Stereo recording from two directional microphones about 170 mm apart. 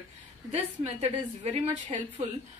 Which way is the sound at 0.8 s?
35° right (ahead or behind).